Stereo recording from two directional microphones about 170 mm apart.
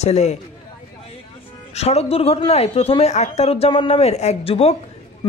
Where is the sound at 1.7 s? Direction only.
40° left (ahead or behind).